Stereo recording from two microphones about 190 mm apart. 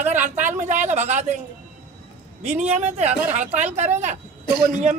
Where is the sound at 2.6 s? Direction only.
35° right (ahead or behind).